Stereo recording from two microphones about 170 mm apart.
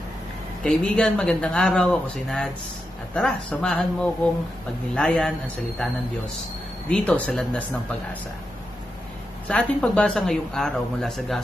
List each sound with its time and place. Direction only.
0.7 s speech: 5° left (ahead or behind)
6.9 s speech: 10° left (ahead or behind)
9.5 s speech: 5° left (ahead or behind)